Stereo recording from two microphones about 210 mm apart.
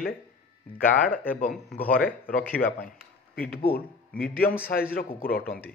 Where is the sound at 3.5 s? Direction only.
45° left (ahead or behind).